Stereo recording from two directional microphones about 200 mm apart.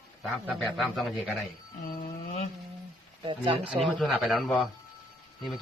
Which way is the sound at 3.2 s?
25° right (ahead or behind).